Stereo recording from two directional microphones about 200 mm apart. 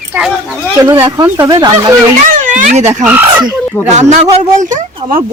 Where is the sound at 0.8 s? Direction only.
10° right (ahead or behind).